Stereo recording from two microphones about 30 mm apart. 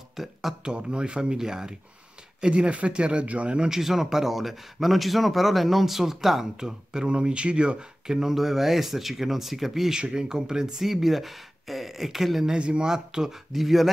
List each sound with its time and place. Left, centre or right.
0.1 s speech: centre
0.7 s speech: right
1.3 s speech: right
2.4 s speech: right
3.7 s speech: centre
6.6 s speech: right
8.1 s speech: centre
9.8 s speech: right
10.8 s speech: centre
12.5 s speech: right
12.8 s speech: centre
13.6 s speech: centre